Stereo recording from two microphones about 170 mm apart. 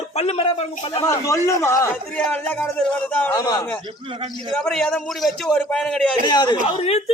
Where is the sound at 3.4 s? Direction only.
25° left (ahead or behind).